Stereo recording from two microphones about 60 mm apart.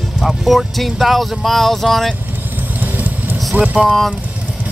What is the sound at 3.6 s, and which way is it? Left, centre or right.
Speech, centre.